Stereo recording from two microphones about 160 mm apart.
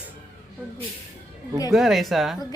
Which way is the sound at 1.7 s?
Centre (ahead or behind).